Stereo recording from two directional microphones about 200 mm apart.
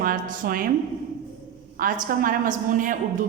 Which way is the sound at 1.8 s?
45° right (ahead or behind).